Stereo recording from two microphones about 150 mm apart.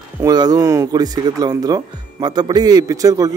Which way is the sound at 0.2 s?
25° right (ahead or behind).